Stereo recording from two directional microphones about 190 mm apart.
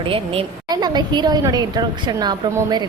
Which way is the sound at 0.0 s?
25° right (ahead or behind).